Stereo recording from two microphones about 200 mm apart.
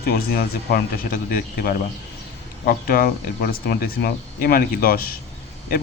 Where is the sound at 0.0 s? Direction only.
50° left (ahead or behind).